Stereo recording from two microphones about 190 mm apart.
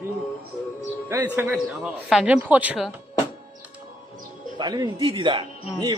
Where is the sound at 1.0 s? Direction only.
15° right (ahead or behind).